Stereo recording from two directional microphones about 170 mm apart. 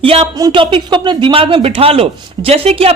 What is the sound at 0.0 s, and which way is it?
Speech, 35° right (ahead or behind).